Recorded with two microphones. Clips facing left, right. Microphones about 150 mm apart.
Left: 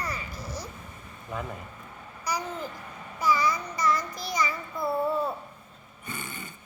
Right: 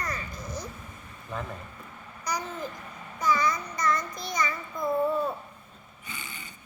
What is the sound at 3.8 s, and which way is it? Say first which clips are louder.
Child singing: left 1 dB; 5° left (ahead or behind).